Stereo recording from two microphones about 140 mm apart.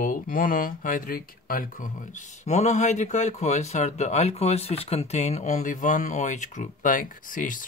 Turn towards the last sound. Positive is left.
turn(degrees=70)  # may be behind; listen again after turning